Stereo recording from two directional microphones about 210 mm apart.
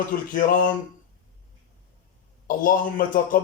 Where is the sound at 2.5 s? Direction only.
40° left (ahead or behind).